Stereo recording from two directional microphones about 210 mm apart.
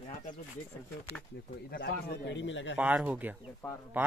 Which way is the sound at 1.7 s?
50° left (ahead or behind).